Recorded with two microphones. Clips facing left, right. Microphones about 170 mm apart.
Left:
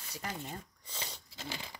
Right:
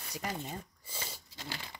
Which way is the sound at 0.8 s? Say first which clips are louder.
Right 1 dB; 10° right (ahead or behind).